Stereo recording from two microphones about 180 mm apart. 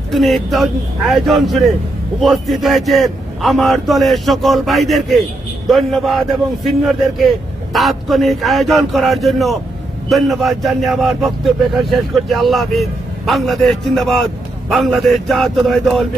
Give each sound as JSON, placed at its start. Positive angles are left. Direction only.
{"t": 0.1, "sound": "a man's voice", "side_deg": 0}